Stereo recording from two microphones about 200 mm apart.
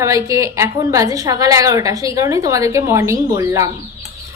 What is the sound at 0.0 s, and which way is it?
A woman's voice, 15° right (ahead or behind).